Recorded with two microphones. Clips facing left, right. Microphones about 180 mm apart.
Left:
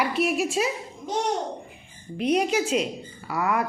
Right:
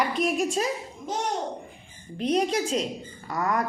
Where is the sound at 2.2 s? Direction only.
10° left (ahead or behind).